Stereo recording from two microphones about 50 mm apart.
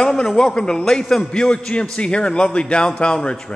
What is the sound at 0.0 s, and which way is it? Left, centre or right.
A man's voice, centre.